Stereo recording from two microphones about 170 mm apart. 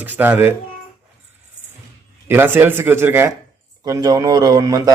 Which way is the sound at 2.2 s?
15° right (ahead or behind).